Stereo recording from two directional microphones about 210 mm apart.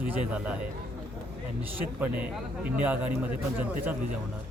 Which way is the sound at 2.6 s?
10° right (ahead or behind).